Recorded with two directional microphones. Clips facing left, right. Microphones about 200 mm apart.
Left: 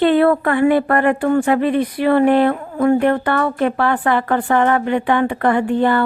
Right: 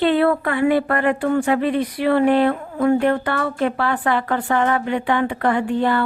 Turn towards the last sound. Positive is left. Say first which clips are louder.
# left 3 dB
turn(degrees=50)  # may be behind; listen again after turning